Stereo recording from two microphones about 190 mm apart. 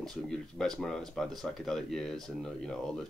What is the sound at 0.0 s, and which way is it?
Speech, 5° left (ahead or behind).